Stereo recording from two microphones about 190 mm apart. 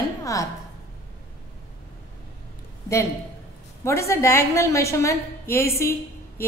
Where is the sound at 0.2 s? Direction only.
15° left (ahead or behind).